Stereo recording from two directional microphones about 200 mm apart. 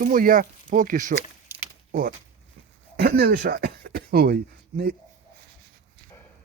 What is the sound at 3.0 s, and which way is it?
Speech, 50° right (ahead or behind).